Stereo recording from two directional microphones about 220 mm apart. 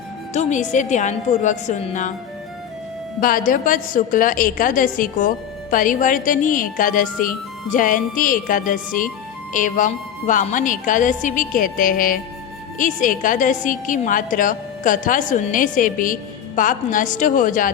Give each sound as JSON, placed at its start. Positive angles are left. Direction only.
{"t": 0.3, "sound": "a woman's voice", "side_deg": 35}
{"t": 3.2, "sound": "a woman's voice", "side_deg": 40}